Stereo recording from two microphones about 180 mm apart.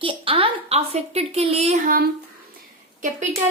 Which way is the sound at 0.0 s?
30° right (ahead or behind).